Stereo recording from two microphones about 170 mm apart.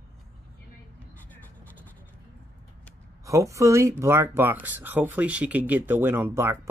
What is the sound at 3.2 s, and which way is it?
Speech, 20° right (ahead or behind).